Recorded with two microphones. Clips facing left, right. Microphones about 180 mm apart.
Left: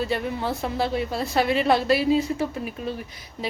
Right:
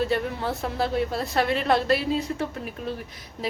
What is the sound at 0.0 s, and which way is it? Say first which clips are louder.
A woman's voice: even; centre (ahead or behind).